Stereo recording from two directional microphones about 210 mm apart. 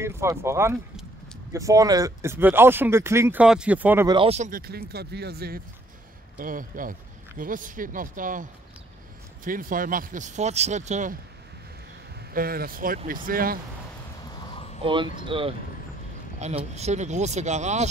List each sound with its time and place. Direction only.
0.0 s speech: 15° right (ahead or behind)
4.1 s speech: 25° right (ahead or behind)
12.4 s speech: 45° right (ahead or behind)
14.8 s speech: 25° right (ahead or behind)